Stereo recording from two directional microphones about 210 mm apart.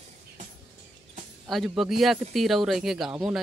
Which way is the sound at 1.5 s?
Centre (ahead or behind).